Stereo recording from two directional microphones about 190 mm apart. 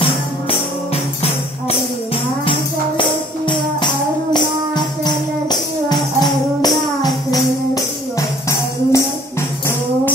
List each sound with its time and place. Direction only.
3.0 s music: 25° left (ahead or behind)
7.2 s music: 15° left (ahead or behind)